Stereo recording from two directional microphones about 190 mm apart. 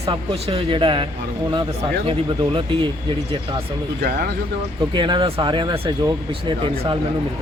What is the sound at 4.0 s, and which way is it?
Speech, 55° right (ahead or behind).